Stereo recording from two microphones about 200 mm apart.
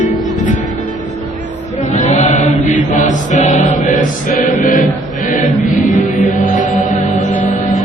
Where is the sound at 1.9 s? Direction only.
35° left (ahead or behind).